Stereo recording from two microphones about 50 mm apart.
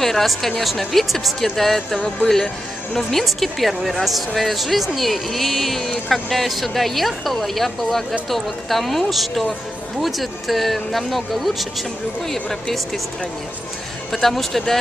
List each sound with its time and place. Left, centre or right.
0.0 s speech: centre
14.1 s speech: centre